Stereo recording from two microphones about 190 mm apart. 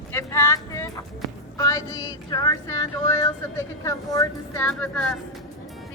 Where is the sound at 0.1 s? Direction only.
15° left (ahead or behind).